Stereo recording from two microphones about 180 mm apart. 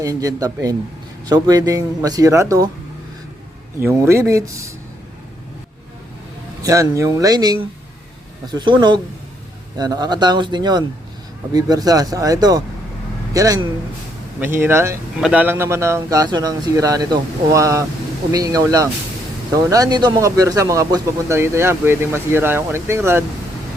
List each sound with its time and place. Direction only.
0.0 s speech: 20° right (ahead or behind)
3.8 s speech: 15° right (ahead or behind)
6.6 s speech: 20° right (ahead or behind)